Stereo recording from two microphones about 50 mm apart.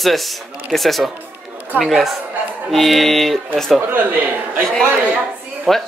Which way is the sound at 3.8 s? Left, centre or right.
Right.